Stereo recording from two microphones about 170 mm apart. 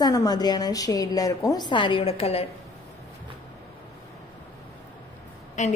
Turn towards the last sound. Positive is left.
turn(degrees=45)  # may be behind; listen again after turning